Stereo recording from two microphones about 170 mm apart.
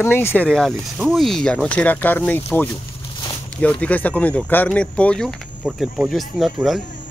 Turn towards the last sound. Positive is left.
turn(degrees=0)  # may be behind; listen again after turning